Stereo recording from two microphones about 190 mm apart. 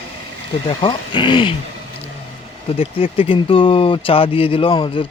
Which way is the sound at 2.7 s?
30° left (ahead or behind).